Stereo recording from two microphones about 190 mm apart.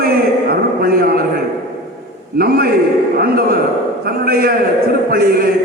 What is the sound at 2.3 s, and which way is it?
A man's voice, 50° right (ahead or behind).